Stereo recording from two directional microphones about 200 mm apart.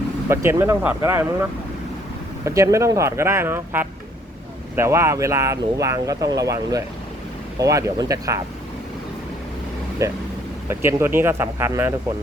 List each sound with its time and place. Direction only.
0.3 s speech: 15° right (ahead or behind)
2.4 s speech: 15° right (ahead or behind)
10.0 s speech: 15° right (ahead or behind)